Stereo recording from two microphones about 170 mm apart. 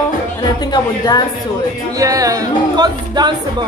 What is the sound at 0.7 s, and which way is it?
Speech, 25° left (ahead or behind).